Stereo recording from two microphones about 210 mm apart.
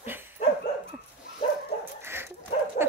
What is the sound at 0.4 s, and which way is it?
Dog, 30° left (ahead or behind).